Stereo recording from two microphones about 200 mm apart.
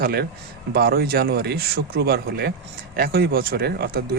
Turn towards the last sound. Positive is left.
turn(degrees=-50)  # may be behind; listen again after turning